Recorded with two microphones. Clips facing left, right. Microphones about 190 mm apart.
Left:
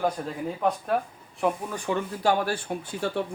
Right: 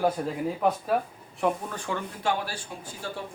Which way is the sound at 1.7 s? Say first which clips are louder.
Left 4 dB; 15° left (ahead or behind).